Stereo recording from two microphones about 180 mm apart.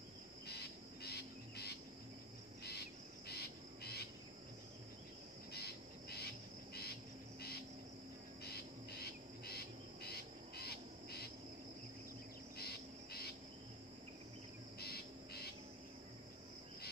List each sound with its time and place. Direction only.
0.5 s bird: 65° left (ahead or behind)
2.6 s insect: 65° left (ahead or behind)
5.5 s cricket: 65° left (ahead or behind)
12.5 s cricket: 60° left (ahead or behind)
14.8 s insect: 60° left (ahead or behind)